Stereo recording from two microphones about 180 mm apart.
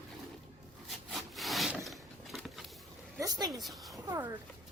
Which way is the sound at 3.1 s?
20° right (ahead or behind).